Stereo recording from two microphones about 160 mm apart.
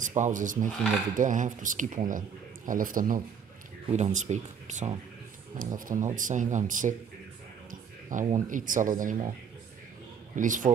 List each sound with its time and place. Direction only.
0.0 s speech: 50° right (ahead or behind)
3.9 s speech: 50° right (ahead or behind)
5.6 s speech: 55° right (ahead or behind)
8.1 s speech: 55° right (ahead or behind)
10.3 s speech: 55° right (ahead or behind)